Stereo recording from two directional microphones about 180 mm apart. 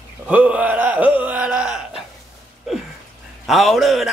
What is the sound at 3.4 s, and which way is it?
Speech, centre (ahead or behind).